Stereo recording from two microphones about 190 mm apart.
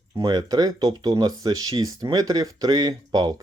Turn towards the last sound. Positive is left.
turn(degrees=-20)  # may be behind; listen again after turning